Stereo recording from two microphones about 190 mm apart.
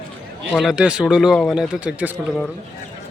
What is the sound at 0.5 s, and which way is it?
Speech, centre (ahead or behind).